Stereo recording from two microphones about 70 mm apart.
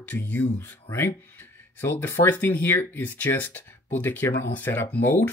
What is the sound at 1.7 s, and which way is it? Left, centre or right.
Speech, left.